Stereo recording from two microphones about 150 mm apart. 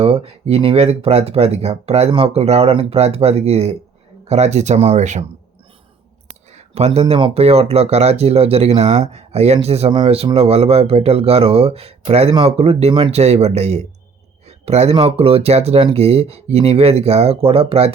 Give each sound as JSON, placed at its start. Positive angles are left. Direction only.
{"t": 0.0, "sound": "speech", "side_deg": -40}
{"t": 6.5, "sound": "speech", "side_deg": -45}